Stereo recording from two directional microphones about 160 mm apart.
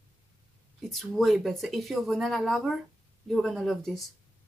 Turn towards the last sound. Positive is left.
turn(degrees=0)  # may be behind; listen again after turning